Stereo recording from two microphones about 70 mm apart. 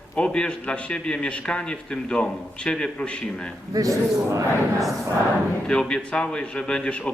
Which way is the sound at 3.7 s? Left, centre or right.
Right.